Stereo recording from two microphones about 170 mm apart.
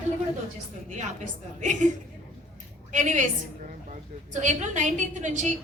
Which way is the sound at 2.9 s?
45° right (ahead or behind).